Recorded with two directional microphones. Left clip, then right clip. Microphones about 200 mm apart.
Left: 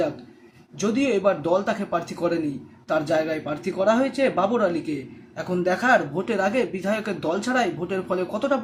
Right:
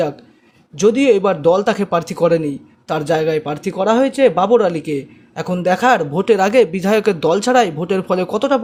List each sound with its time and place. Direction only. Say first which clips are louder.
0.8 s speech: right 10 dB; 45° right (ahead or behind)